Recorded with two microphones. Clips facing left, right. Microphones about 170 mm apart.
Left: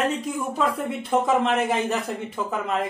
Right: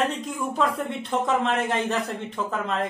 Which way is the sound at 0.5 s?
Centre (ahead or behind).